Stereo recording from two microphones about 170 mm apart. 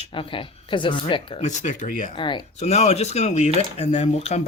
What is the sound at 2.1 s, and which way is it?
Speech, 30° left (ahead or behind).